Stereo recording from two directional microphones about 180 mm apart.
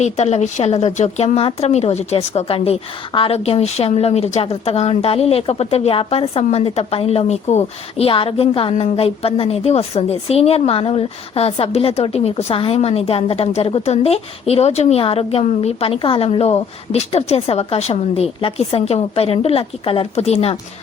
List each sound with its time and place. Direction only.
0.0 s a woman's voice: 40° left (ahead or behind)